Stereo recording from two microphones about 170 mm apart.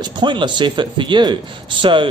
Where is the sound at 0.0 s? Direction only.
25° right (ahead or behind).